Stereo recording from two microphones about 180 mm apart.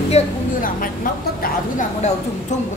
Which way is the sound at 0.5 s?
50° left (ahead or behind).